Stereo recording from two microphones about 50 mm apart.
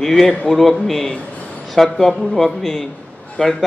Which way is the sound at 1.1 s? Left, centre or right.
Left.